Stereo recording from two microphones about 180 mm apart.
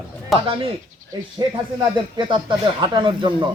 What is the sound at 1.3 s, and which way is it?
Speech, 25° right (ahead or behind).